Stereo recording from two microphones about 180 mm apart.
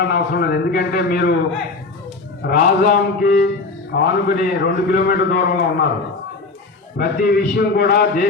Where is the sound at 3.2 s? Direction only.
55° left (ahead or behind).